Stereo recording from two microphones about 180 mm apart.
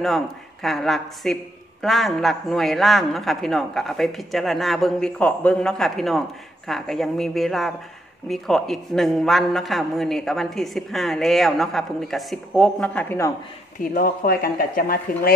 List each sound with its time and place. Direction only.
0.0 s a man's voice: centre (ahead or behind)
13.9 s speech: 55° left (ahead or behind)